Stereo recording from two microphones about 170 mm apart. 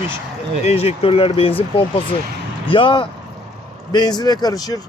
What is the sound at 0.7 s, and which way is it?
Speech, 35° left (ahead or behind).